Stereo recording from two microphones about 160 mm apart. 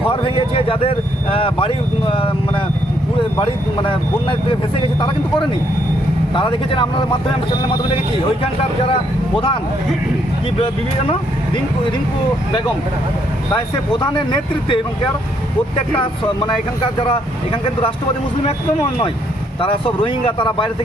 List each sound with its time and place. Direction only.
0.1 s speech: 35° left (ahead or behind)
3.3 s speech: 30° left (ahead or behind)
8.8 s speech: 35° left (ahead or behind)
13.9 s speech: 30° left (ahead or behind)
17.0 s speech: 30° left (ahead or behind)
19.6 s speech: 30° left (ahead or behind)